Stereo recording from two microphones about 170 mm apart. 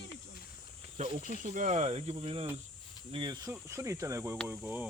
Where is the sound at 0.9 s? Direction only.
40° right (ahead or behind).